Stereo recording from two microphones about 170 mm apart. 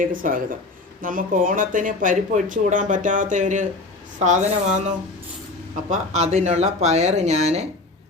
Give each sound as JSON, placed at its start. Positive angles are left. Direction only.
{"t": 0.0, "sound": "speech", "side_deg": -55}
{"t": 5.9, "sound": "speech", "side_deg": -45}